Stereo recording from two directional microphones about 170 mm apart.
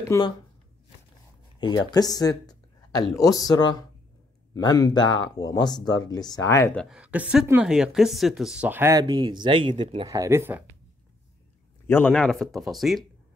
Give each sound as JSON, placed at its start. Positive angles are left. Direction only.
{"t": 0.0, "sound": "speech", "side_deg": 20}
{"t": 1.6, "sound": "speech", "side_deg": 25}
{"t": 6.8, "sound": "speech", "side_deg": -5}
{"t": 9.0, "sound": "speech", "side_deg": -25}
{"t": 10.0, "sound": "speech", "side_deg": -20}
{"t": 11.9, "sound": "speech", "side_deg": 10}